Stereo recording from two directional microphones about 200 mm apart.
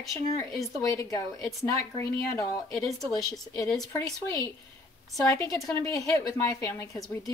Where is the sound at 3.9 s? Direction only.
15° left (ahead or behind).